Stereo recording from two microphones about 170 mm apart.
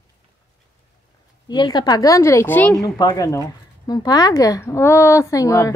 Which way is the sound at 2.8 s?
20° left (ahead or behind).